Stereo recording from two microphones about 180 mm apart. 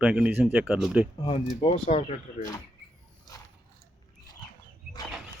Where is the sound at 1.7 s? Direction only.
35° left (ahead or behind).